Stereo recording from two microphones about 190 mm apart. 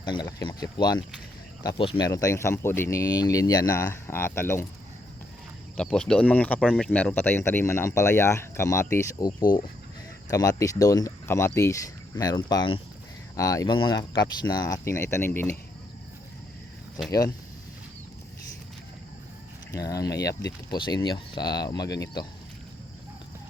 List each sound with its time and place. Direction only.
0.0 s speech: 25° left (ahead or behind)
5.7 s speech: 5° left (ahead or behind)
9.4 s speech: 45° left (ahead or behind)
10.2 s speech: 20° left (ahead or behind)
17.1 s speech: 20° left (ahead or behind)
19.7 s speech: 20° left (ahead or behind)